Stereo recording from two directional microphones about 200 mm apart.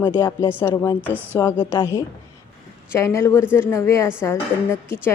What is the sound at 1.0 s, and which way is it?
Speech, 10° right (ahead or behind).